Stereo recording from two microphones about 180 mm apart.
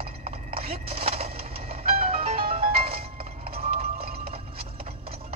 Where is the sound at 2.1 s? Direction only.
35° right (ahead or behind).